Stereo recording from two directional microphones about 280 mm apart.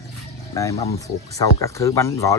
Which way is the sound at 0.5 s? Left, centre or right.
Centre.